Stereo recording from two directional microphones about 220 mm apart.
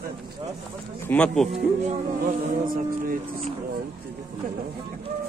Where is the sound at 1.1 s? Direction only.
5° left (ahead or behind).